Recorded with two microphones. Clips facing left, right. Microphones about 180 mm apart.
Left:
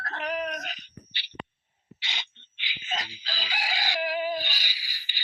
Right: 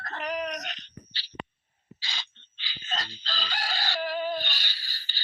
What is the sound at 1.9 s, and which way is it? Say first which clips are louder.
Chicken: left 1 dB; 20° left (ahead or behind).